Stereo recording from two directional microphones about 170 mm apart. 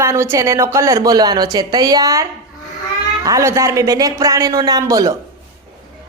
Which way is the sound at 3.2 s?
20° right (ahead or behind).